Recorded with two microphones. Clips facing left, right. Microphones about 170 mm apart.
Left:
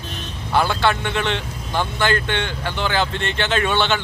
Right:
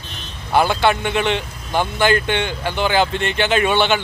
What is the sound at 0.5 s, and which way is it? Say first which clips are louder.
Speech: right 3 dB; 15° right (ahead or behind).